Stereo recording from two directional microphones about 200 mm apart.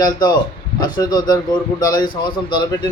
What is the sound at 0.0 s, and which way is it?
Speech, 20° left (ahead or behind).